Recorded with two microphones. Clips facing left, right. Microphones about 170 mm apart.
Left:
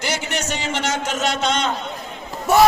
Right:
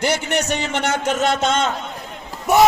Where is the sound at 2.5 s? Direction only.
20° right (ahead or behind).